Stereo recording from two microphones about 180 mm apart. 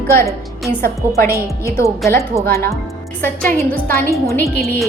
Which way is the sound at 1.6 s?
15° left (ahead or behind).